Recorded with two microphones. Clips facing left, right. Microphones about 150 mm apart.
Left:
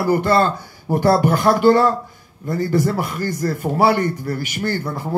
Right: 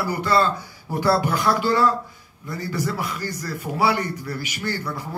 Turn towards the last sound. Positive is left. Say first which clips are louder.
# left 5 dB
turn(degrees=50)  # may be behind; listen again after turning